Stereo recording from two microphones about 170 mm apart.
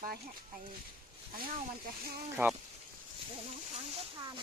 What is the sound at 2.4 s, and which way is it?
Speech, 10° right (ahead or behind).